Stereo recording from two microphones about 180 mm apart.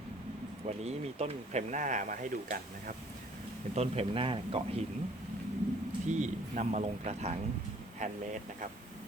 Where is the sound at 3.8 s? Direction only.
35° right (ahead or behind).